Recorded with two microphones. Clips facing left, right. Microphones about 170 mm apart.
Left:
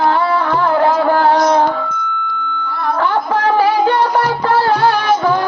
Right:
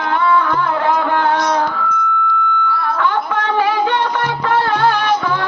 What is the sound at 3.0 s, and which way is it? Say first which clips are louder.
Music: left 4 dB; 35° left (ahead or behind).